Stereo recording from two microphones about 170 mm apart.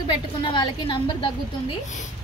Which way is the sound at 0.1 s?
30° left (ahead or behind).